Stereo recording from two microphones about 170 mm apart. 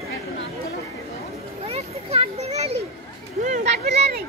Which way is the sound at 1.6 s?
35° right (ahead or behind).